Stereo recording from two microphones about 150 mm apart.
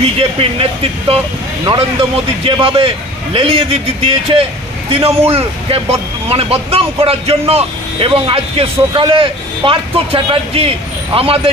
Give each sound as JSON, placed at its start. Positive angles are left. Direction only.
{"t": 0.0, "sound": "speech", "side_deg": -40}